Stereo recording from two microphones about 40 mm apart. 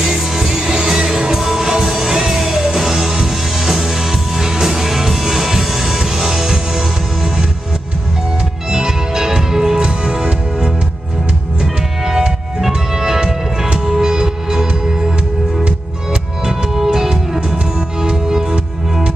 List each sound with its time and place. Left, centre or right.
0.0 s music: centre
8.6 s music: centre
9.8 s music: right
11.6 s music: centre